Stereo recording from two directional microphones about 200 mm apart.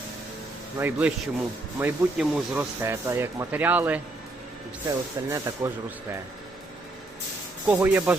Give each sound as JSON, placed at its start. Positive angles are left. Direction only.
{"t": 0.8, "sound": "speech", "side_deg": -10}
{"t": 7.7, "sound": "speech", "side_deg": -10}